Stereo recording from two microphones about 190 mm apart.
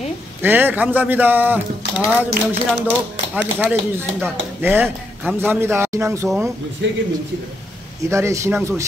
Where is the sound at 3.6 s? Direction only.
10° right (ahead or behind).